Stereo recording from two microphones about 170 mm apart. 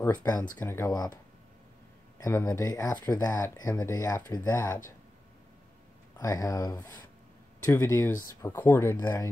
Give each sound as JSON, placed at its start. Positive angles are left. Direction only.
{"t": 0.0, "sound": "speech", "side_deg": 15}
{"t": 2.1, "sound": "speech", "side_deg": 20}
{"t": 6.1, "sound": "speech", "side_deg": 20}